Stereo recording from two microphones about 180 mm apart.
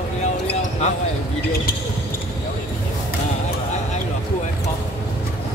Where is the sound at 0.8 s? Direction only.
40° left (ahead or behind).